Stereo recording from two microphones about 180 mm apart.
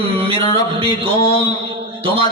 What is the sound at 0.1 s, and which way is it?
A man's voice, 30° right (ahead or behind).